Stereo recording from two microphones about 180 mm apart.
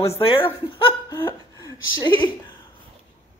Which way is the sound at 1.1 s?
20° left (ahead or behind).